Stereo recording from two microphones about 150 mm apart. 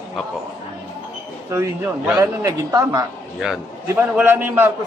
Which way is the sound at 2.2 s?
20° right (ahead or behind).